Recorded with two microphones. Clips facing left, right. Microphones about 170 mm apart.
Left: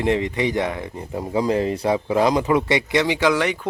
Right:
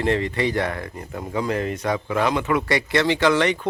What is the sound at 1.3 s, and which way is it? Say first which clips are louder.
Speech: left 4 dB; 30° left (ahead or behind).